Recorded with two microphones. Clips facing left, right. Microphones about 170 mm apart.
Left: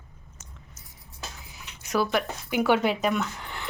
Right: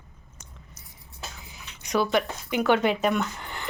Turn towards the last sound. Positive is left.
turn(degrees=0)  # may be behind; listen again after turning